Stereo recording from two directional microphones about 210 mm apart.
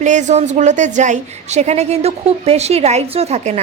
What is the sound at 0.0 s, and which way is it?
A woman's voice, 35° right (ahead or behind).